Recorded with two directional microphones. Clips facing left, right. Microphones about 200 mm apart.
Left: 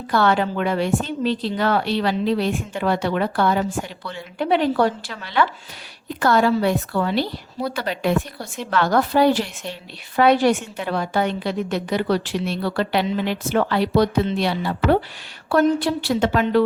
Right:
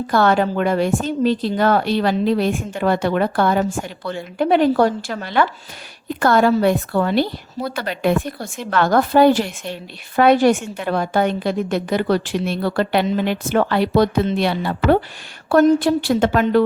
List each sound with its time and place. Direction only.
0.1 s a woman's voice: 45° right (ahead or behind)